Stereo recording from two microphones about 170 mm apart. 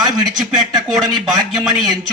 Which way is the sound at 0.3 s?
Centre (ahead or behind).